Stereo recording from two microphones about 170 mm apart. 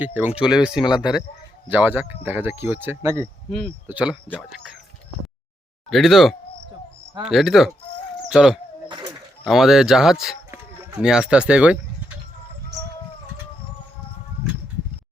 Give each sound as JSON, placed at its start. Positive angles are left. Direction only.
{"t": 0.0, "sound": "speech", "side_deg": -10}
{"t": 5.9, "sound": "speech", "side_deg": 0}
{"t": 8.9, "sound": "a sound", "side_deg": -25}
{"t": 9.4, "sound": "speech", "side_deg": 0}